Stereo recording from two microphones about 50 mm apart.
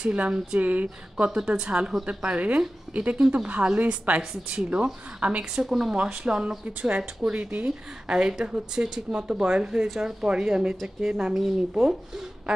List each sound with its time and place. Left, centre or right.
0.0 s speech: right
1.1 s speech: centre
6.6 s speech: right
7.0 s speech: centre